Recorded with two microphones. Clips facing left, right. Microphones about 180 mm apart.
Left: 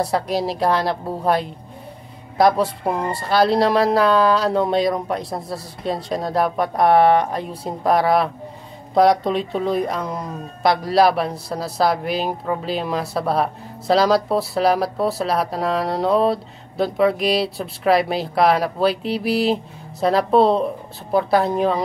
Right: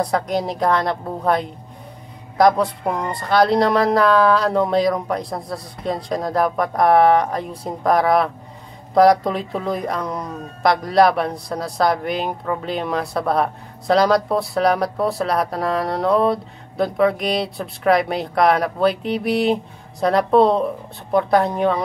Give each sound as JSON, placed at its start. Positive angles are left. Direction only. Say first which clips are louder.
{"t": 0.5, "sound": "speech", "louder": "even", "side_deg": 5}
{"t": 3.6, "sound": "speech", "louder": "even", "side_deg": 25}
{"t": 3.9, "sound": "speech", "louder": "right 1 dB", "side_deg": 0}